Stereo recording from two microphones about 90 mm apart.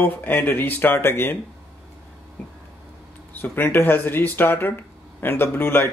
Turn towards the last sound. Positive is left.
turn(degrees=25)  # may be behind; listen again after turning